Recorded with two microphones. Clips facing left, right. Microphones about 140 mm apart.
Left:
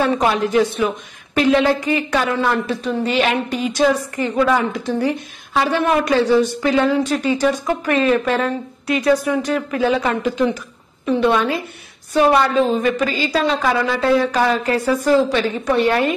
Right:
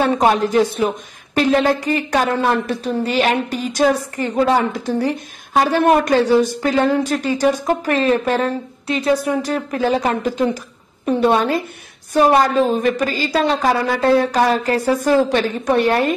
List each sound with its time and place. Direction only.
0.0 s speech: 40° right (ahead or behind)
9.5 s a woman's voice: 40° right (ahead or behind)